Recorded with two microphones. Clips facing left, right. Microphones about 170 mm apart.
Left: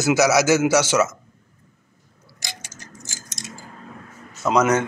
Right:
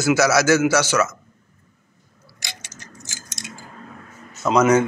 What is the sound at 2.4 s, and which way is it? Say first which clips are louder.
Tick-tock: left 1 dB; 45° left (ahead or behind).